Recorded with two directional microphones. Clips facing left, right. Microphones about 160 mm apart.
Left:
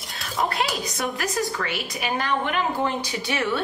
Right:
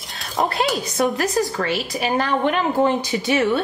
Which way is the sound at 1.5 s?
30° right (ahead or behind).